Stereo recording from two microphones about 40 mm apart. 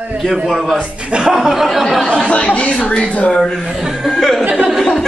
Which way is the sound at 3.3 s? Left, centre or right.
Centre.